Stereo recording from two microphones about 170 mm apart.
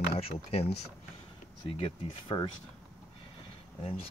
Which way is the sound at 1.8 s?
30° left (ahead or behind).